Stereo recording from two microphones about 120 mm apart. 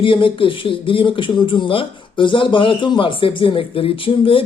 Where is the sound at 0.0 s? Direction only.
45° left (ahead or behind).